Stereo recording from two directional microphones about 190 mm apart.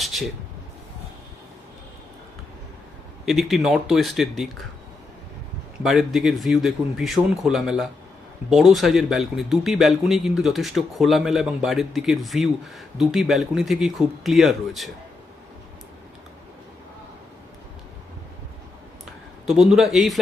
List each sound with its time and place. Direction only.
0.0 s a sound: centre (ahead or behind)
3.2 s speech: centre (ahead or behind)
5.8 s speech: centre (ahead or behind)
19.5 s speech: centre (ahead or behind)